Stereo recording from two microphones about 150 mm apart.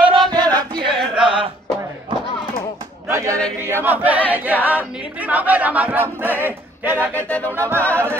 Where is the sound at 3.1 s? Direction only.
20° right (ahead or behind).